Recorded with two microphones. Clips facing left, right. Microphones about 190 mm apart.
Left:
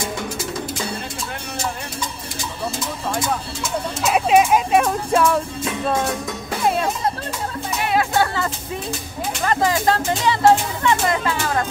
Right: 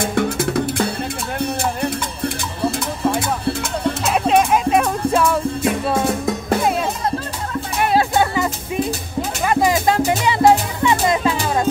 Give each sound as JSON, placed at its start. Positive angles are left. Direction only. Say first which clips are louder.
{"t": 0.0, "sound": "music", "louder": "right 7 dB", "side_deg": -60}
{"t": 4.0, "sound": "music", "louder": "left 2 dB", "side_deg": 0}
{"t": 8.2, "sound": "music", "louder": "right 2 dB", "side_deg": -15}